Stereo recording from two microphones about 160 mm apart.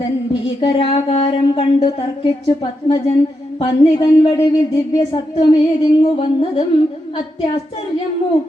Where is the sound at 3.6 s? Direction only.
25° left (ahead or behind).